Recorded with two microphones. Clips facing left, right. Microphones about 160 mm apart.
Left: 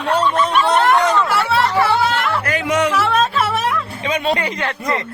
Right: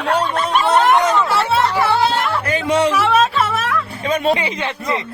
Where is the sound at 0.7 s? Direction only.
20° right (ahead or behind).